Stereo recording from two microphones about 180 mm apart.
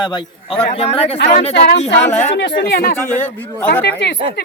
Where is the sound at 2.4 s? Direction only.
75° left (ahead or behind); by 3.0 s 55° left (ahead or behind).